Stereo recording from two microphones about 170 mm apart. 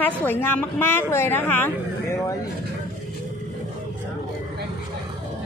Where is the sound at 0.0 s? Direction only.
10° left (ahead or behind).